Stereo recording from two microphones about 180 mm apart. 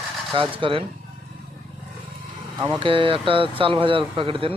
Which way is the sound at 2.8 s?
30° right (ahead or behind).